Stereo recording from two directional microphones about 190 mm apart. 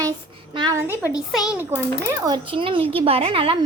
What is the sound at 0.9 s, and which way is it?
Speech, 15° left (ahead or behind).